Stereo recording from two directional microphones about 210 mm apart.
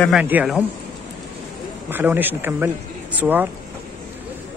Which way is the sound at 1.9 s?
10° right (ahead or behind).